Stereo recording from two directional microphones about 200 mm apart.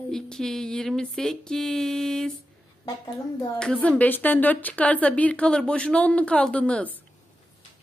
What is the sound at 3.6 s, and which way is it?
A woman's voice, 5° left (ahead or behind).